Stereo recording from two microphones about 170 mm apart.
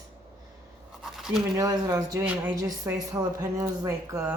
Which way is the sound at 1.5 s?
20° right (ahead or behind).